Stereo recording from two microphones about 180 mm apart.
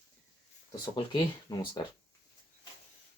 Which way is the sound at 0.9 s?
25° left (ahead or behind).